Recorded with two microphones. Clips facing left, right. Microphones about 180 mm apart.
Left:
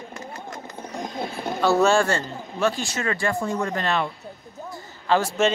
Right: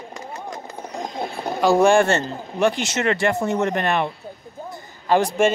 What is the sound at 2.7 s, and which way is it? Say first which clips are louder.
Speech: right 4 dB; 75° right (ahead or behind).